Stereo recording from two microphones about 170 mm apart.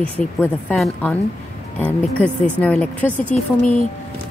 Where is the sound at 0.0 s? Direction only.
10° left (ahead or behind).